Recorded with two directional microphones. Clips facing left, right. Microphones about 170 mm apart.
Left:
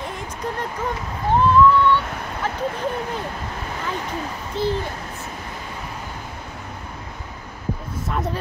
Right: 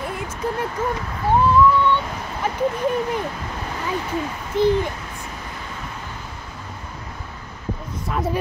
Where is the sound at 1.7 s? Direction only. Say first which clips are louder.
Left 1 dB; 15° right (ahead or behind).